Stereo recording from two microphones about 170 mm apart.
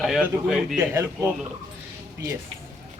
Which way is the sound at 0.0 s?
Centre (ahead or behind).